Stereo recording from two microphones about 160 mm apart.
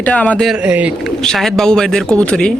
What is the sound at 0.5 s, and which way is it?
A man's voice, 10° right (ahead or behind).